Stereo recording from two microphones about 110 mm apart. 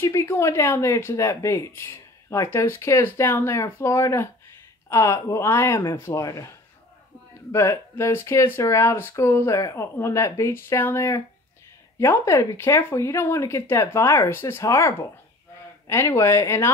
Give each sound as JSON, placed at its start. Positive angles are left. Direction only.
{"t": 0.0, "sound": "a woman's voice", "side_deg": 25}
{"t": 7.5, "sound": "a woman's voice", "side_deg": 25}
{"t": 16.1, "sound": "a woman's voice", "side_deg": 30}